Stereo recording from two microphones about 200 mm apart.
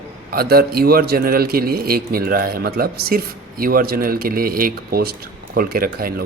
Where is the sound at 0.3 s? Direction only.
50° right (ahead or behind).